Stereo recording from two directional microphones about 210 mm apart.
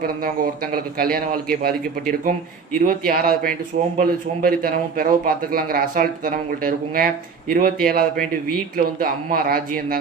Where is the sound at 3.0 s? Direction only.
45° right (ahead or behind).